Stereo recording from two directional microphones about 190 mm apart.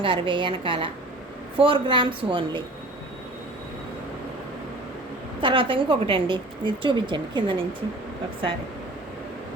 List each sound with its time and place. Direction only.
0.0 s a woman's voice: 25° right (ahead or behind)
5.4 s a woman's voice: 25° right (ahead or behind)